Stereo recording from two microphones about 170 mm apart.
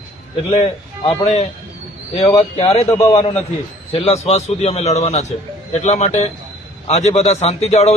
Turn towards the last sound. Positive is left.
turn(degrees=40)  # may be behind; listen again after turning